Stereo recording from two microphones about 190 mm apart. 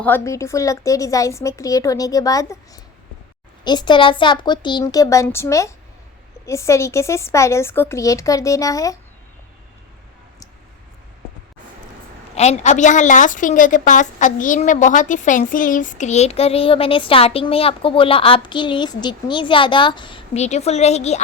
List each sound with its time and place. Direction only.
0.0 s a woman's voice: 15° left (ahead or behind)
12.4 s a woman's voice: 35° left (ahead or behind)